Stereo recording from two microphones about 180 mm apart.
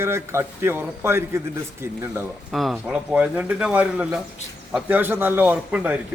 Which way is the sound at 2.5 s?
Centre (ahead or behind).